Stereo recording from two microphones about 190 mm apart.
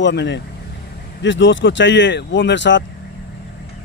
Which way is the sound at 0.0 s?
65° left (ahead or behind).